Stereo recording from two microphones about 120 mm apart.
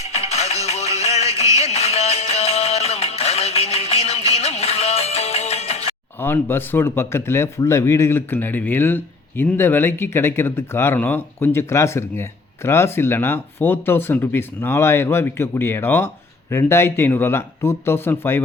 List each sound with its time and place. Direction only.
0.3 s music: 65° left (ahead or behind)
6.1 s speech: 20° left (ahead or behind)